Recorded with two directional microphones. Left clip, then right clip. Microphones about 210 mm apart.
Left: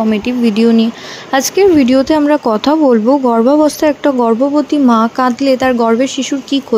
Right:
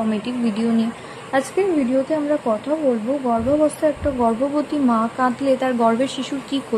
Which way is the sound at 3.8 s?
30° left (ahead or behind).